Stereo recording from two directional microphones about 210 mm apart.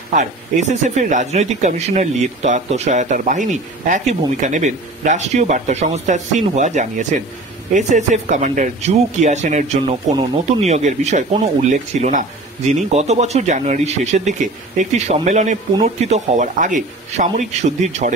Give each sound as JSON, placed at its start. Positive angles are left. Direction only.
{"t": 0.1, "sound": "speech", "side_deg": -35}